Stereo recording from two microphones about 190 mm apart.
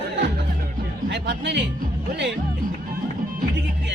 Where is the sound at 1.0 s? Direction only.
65° right (ahead or behind).